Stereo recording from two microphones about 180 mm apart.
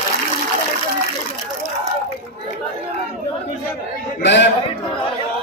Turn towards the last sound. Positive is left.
turn(degrees=75)  # may be behind; listen again after turning